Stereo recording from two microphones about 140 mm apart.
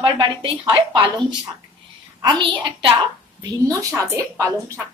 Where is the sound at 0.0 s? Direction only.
35° right (ahead or behind).